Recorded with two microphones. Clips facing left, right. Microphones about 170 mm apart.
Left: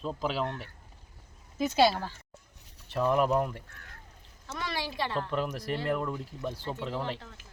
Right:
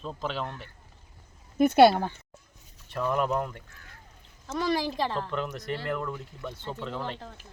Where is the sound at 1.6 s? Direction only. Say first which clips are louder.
Right 7 dB; 55° right (ahead or behind).